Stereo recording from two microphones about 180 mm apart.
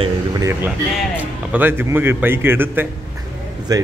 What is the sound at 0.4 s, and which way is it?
A man's voice, 15° right (ahead or behind).